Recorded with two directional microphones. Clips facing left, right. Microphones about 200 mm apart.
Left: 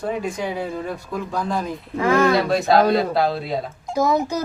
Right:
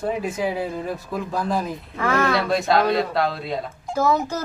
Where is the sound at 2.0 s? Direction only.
15° left (ahead or behind).